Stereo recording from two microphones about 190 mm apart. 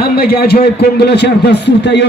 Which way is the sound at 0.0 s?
55° left (ahead or behind).